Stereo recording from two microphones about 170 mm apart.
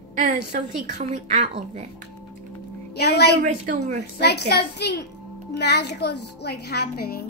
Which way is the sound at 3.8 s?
75° left (ahead or behind).